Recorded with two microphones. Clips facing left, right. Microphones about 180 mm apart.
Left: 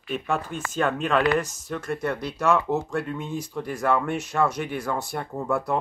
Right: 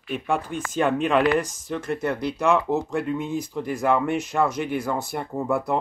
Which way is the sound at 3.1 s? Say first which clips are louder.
Right 4 dB; 15° right (ahead or behind).